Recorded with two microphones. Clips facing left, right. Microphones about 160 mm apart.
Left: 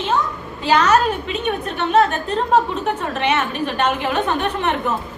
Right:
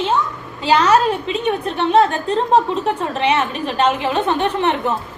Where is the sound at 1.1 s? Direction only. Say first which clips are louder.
Right 3 dB; 30° right (ahead or behind).